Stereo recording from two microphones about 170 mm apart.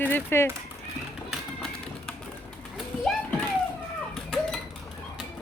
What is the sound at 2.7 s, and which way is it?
Bird, 5° left (ahead or behind).